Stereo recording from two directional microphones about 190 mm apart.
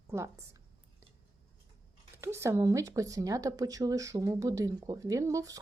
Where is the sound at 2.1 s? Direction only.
15° right (ahead or behind).